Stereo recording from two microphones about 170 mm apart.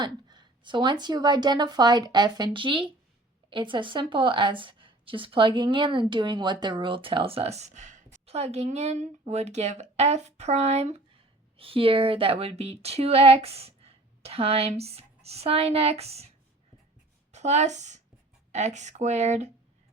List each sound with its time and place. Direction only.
0.0 s a woman's voice: 25° right (ahead or behind)
17.3 s a woman's voice: 40° right (ahead or behind)